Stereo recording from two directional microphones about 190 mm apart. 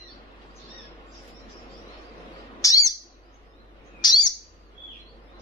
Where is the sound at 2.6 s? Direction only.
15° left (ahead or behind).